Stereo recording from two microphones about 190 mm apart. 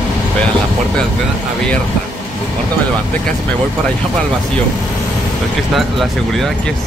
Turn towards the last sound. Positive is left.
turn(degrees=0)  # may be behind; listen again after turning